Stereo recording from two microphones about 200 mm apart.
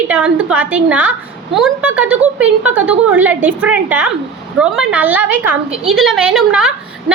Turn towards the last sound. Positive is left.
turn(degrees=-5)  # may be behind; listen again after turning